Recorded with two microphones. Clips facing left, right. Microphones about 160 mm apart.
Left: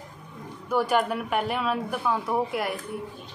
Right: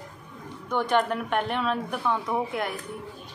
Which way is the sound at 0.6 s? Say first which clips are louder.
Left 1 dB; 5° left (ahead or behind).